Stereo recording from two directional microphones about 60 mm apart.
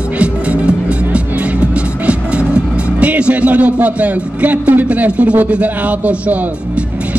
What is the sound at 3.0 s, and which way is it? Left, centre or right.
A man's voice, right.